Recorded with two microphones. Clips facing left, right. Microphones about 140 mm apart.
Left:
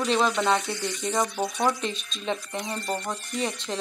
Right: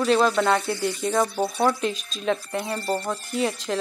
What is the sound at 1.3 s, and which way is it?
Speech, 30° right (ahead or behind).